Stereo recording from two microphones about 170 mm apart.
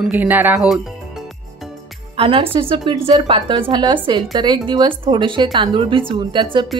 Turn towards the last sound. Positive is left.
turn(degrees=-30)  # may be behind; listen again after turning